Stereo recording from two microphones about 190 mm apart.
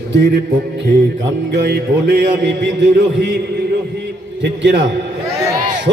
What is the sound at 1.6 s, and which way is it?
Heart sounds, 60° right (ahead or behind).